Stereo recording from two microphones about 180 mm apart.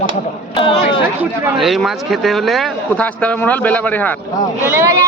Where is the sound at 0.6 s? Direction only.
30° left (ahead or behind).